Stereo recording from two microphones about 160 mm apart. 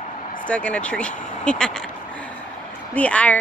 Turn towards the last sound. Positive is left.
turn(degrees=10)  # may be behind; listen again after turning